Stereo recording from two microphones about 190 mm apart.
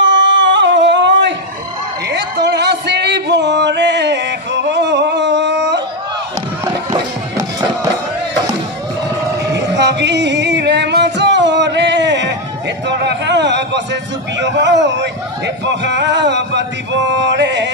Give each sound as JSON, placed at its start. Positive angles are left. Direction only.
{"t": 0.0, "sound": "a sound", "side_deg": -75}
{"t": 2.0, "sound": "music", "side_deg": -65}
{"t": 6.6, "sound": "music", "side_deg": -20}
{"t": 9.5, "sound": "singing", "side_deg": -65}
{"t": 14.3, "sound": "a man's voice", "side_deg": -70}